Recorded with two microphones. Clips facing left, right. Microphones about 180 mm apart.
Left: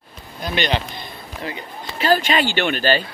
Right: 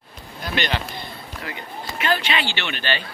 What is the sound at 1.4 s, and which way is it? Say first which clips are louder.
Speech: left 4 dB; 30° left (ahead or behind).